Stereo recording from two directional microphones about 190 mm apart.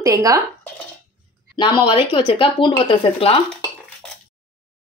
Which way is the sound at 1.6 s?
25° left (ahead or behind).